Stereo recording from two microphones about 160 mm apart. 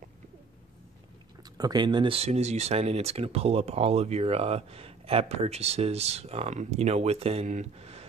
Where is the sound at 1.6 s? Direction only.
25° right (ahead or behind).